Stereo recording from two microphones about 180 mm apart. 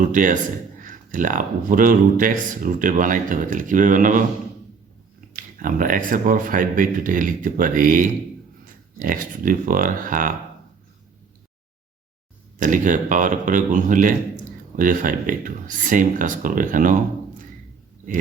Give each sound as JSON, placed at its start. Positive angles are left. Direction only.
{"t": 0.0, "sound": "speech", "side_deg": -45}
{"t": 5.4, "sound": "speech", "side_deg": -50}
{"t": 12.5, "sound": "speech", "side_deg": -45}